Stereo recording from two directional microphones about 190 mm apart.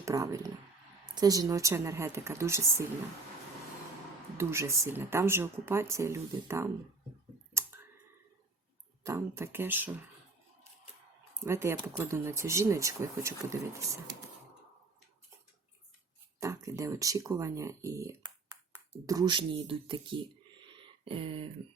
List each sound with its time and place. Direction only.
0.0 s speech: 15° right (ahead or behind)
4.4 s speech: 15° right (ahead or behind)
9.0 s speech: 10° right (ahead or behind)
11.4 s speech: 15° right (ahead or behind)
16.4 s speech: 15° right (ahead or behind)
20.6 s a sound: 25° right (ahead or behind)